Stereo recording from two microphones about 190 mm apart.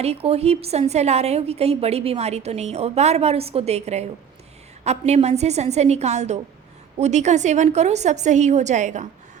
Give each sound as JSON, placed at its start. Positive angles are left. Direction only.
{"t": 0.0, "sound": "a woman's voice", "side_deg": -30}